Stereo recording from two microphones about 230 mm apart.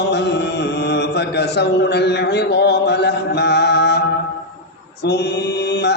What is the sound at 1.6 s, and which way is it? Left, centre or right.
Music, left.